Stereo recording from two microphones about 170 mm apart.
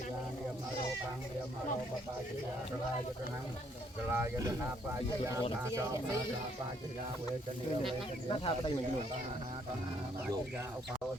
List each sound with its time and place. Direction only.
4.1 s speech: 15° right (ahead or behind)
8.3 s speech: 30° left (ahead or behind)